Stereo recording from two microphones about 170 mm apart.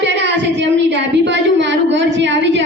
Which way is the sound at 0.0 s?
90° right.